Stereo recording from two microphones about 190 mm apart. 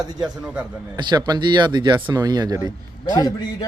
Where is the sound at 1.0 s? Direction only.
20° right (ahead or behind).